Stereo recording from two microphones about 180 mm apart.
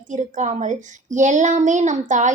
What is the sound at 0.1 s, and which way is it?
A woman's voice, 40° right (ahead or behind).